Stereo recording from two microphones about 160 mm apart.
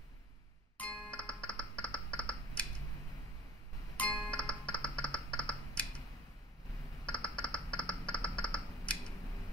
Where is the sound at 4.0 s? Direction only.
10° left (ahead or behind).